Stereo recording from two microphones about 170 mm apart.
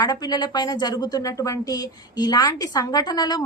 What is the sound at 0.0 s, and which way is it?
A woman's voice, 25° left (ahead or behind).